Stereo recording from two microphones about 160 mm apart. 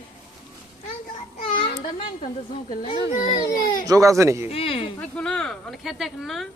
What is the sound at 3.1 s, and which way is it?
Speech, 50° left (ahead or behind).